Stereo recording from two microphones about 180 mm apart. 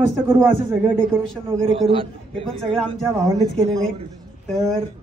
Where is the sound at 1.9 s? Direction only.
30° right (ahead or behind).